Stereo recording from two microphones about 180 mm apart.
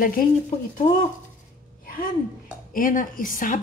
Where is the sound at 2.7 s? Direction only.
50° left (ahead or behind).